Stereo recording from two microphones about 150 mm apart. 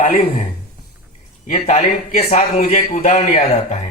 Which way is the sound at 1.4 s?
55° left (ahead or behind).